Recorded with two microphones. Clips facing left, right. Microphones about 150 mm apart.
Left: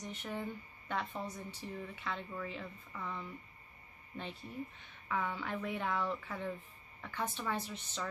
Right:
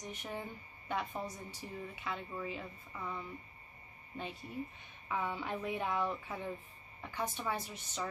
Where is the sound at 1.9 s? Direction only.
10° right (ahead or behind).